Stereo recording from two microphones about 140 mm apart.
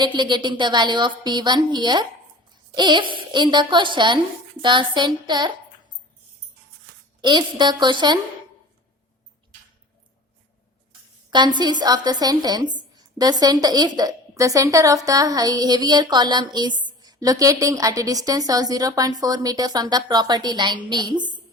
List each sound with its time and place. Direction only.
0.0 s speech: 35° right (ahead or behind)
7.2 s speech: 35° right (ahead or behind)
11.3 s a woman's voice: 30° right (ahead or behind)